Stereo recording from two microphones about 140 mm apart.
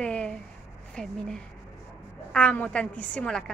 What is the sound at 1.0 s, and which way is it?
Speech, 5° left (ahead or behind).